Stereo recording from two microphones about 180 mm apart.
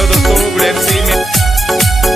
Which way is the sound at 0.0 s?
Centre (ahead or behind).